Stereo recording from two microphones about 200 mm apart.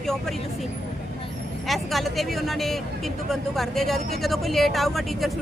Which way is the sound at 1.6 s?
Centre (ahead or behind).